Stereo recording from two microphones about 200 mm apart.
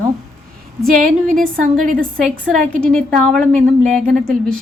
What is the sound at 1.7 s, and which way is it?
Speech, 40° right (ahead or behind).